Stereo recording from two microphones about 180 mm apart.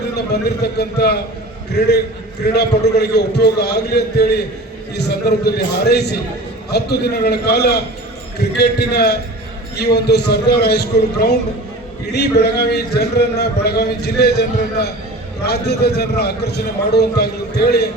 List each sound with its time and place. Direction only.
0.3 s a man's voice: 65° left (ahead or behind)
2.4 s a man's voice: 65° left (ahead or behind)